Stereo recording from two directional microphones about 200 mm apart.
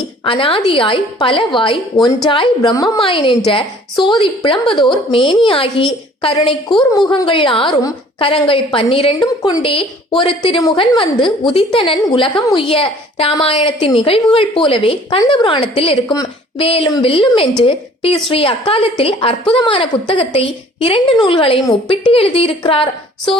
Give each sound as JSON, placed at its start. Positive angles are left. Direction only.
{"t": 0.3, "sound": "a woman's voice", "side_deg": 25}